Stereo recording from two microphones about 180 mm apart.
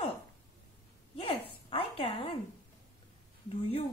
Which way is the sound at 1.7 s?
30° left (ahead or behind).